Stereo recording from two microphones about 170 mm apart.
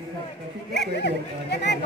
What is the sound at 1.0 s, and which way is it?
Speech, 90° left.